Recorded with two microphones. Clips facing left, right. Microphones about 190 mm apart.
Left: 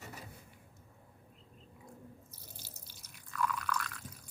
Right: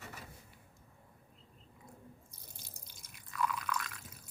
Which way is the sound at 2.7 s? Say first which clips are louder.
Left 1 dB; 10° right (ahead or behind).